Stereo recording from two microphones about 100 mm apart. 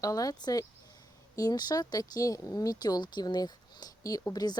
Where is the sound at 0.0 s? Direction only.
35° left (ahead or behind).